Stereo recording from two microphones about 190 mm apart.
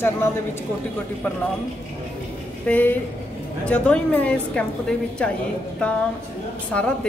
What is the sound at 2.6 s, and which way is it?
A woman's voice, 10° left (ahead or behind).